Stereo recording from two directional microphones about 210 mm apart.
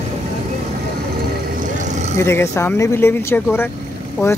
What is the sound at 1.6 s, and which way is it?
Vehicle, 35° right (ahead or behind).